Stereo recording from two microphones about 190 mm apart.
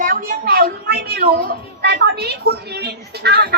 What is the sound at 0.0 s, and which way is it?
A woman's voice, 45° right (ahead or behind).